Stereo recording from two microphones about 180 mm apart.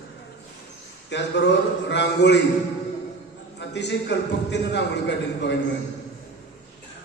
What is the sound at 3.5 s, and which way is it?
A man's voice, 75° left (ahead or behind).